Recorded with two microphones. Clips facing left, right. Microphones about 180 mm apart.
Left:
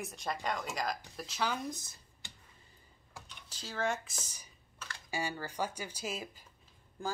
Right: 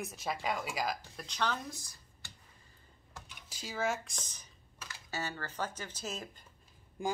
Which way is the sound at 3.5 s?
10° right (ahead or behind).